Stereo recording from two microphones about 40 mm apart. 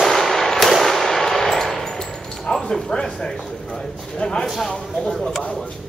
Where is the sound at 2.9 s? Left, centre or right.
Left.